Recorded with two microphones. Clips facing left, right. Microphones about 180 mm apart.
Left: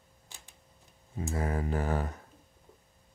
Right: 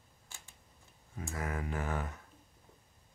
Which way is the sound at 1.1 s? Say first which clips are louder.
Left 6 dB; 25° left (ahead or behind).